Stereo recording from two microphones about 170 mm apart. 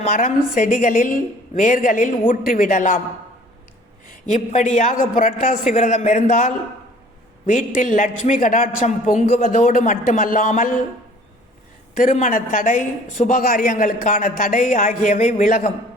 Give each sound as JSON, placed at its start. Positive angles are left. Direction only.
{"t": 0.1, "sound": "a woman's voice", "side_deg": 50}
{"t": 4.0, "sound": "a woman's voice", "side_deg": 50}
{"t": 11.9, "sound": "a woman's voice", "side_deg": 45}